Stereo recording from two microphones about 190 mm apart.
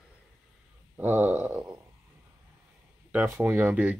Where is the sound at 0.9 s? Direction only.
10° right (ahead or behind).